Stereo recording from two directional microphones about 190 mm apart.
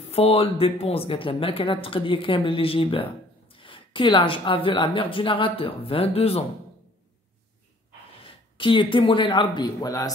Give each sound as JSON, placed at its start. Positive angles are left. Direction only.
{"t": 0.1, "sound": "speech", "side_deg": 30}
{"t": 8.2, "sound": "a man's voice", "side_deg": 25}